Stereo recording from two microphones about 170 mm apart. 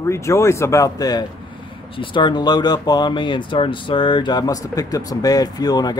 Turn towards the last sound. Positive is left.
turn(degrees=25)  # may be behind; listen again after turning